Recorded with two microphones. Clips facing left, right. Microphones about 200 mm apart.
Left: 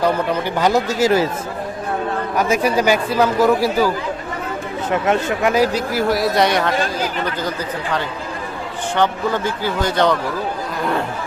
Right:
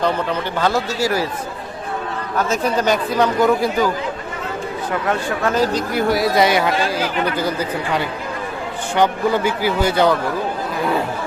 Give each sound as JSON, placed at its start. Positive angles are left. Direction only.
{"t": 0.0, "sound": "a man's voice", "side_deg": 10}
{"t": 2.3, "sound": "a man's voice", "side_deg": 10}
{"t": 5.0, "sound": "speech", "side_deg": 15}
{"t": 9.0, "sound": "speech", "side_deg": -10}